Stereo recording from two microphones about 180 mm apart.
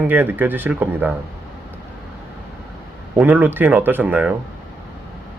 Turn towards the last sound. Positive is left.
turn(degrees=-10)  # may be behind; listen again after turning